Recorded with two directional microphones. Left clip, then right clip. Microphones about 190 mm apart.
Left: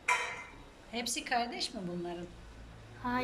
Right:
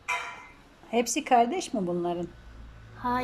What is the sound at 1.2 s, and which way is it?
Speech, 35° right (ahead or behind).